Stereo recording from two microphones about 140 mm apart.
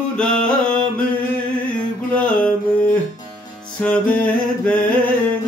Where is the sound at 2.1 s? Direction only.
10° left (ahead or behind).